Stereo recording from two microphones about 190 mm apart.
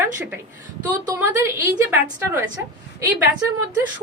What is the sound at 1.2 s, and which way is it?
Speech, 15° right (ahead or behind).